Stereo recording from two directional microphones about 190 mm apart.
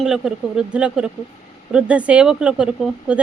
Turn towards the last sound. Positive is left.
turn(degrees=-5)  # may be behind; listen again after turning